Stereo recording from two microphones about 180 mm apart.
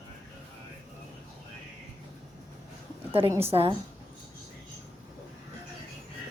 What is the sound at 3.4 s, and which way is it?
Speech, 35° right (ahead or behind).